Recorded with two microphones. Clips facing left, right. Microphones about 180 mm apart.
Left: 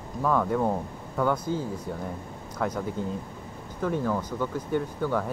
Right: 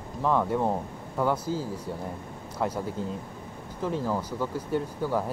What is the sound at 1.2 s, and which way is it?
Speech, 5° right (ahead or behind).